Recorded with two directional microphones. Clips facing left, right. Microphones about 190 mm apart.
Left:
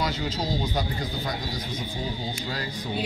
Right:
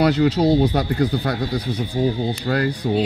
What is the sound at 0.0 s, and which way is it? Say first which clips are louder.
Speech: right 13 dB; 65° right (ahead or behind).